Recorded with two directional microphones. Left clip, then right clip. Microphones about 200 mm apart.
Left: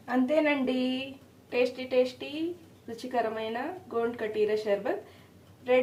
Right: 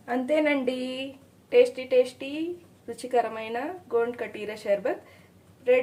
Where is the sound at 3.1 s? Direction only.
40° right (ahead or behind).